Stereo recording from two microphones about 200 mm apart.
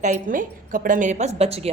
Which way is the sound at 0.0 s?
40° right (ahead or behind).